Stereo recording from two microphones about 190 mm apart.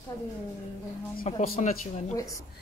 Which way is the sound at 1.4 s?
50° left (ahead or behind).